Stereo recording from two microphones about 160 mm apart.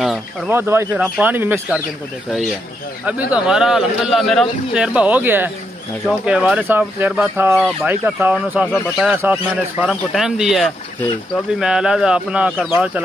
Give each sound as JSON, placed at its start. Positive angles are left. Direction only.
{"t": 0.5, "sound": "speech", "side_deg": -15}
{"t": 3.1, "sound": "a man's voice", "side_deg": -10}